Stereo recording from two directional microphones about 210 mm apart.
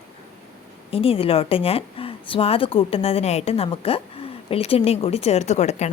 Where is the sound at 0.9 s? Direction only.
25° left (ahead or behind).